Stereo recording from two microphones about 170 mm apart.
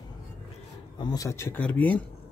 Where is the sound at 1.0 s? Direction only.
20° left (ahead or behind).